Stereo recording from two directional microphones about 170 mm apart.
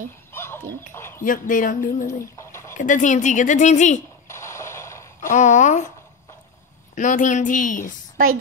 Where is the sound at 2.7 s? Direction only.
50° left (ahead or behind).